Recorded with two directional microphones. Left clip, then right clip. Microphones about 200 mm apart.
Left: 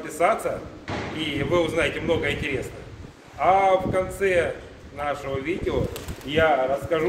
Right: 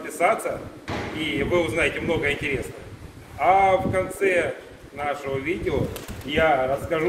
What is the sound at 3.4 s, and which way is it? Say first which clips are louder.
A man's voice: right 1 dB; centre (ahead or behind).